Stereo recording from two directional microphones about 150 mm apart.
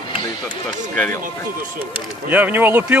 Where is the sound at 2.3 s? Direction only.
15° right (ahead or behind).